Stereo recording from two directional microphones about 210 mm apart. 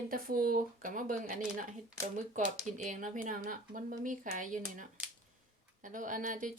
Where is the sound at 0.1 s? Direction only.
45° right (ahead or behind).